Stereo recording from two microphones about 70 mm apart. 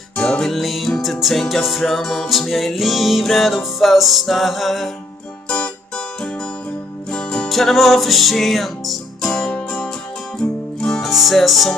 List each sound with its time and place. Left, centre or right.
0.1 s music: centre
5.5 s music: centre
10.8 s music: centre